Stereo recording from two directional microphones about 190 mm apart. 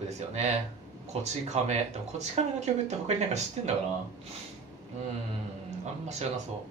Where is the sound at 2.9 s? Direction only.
35° right (ahead or behind).